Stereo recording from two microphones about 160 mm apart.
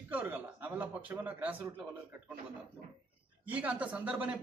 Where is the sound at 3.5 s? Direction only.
10° right (ahead or behind).